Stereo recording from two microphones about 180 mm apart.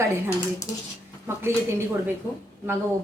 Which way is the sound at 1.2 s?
15° right (ahead or behind).